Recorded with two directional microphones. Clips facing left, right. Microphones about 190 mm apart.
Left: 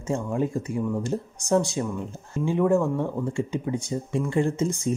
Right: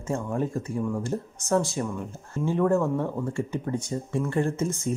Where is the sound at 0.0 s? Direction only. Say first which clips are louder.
Left 2 dB; 15° left (ahead or behind).